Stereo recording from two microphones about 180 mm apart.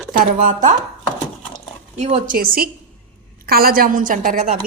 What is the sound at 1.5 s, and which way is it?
Drip, 35° right (ahead or behind).